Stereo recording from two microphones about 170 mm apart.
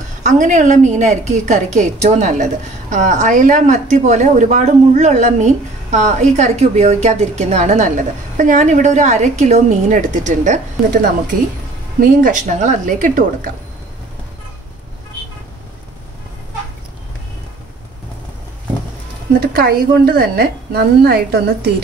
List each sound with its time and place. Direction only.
0.2 s speech: 45° right (ahead or behind)
19.5 s a woman's voice: 65° right (ahead or behind)